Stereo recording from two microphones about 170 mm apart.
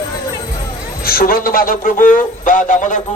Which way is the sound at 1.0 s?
60° left (ahead or behind).